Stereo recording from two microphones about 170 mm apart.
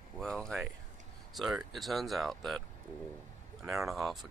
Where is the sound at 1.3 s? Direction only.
Centre (ahead or behind).